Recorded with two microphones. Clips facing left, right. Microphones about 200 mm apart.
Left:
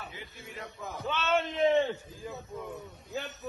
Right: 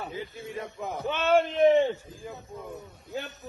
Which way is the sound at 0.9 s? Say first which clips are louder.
Right 4 dB; 15° right (ahead or behind).